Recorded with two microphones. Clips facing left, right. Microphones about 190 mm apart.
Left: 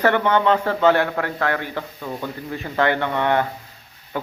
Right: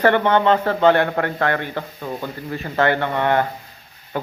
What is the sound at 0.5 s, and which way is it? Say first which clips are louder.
Speech: right 2 dB; 50° right (ahead or behind).